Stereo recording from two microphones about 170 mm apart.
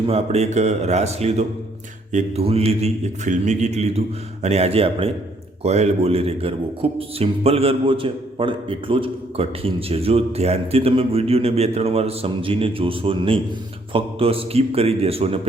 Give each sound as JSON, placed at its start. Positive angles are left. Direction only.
{"t": 0.1, "sound": "speech", "side_deg": -40}